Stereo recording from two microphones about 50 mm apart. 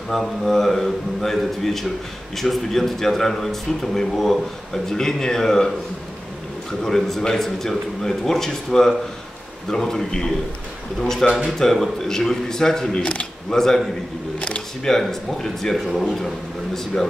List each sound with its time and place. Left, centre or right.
0.1 s a man's voice: centre
6.8 s a man's voice: centre
13.0 s camera: left
13.6 s a man's voice: centre
14.4 s camera: left
14.9 s speech: centre